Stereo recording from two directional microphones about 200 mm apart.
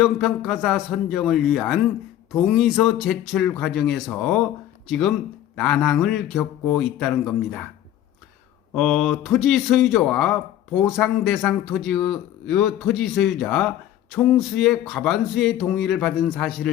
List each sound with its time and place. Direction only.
0.0 s speech: centre (ahead or behind)
8.7 s speech: centre (ahead or behind)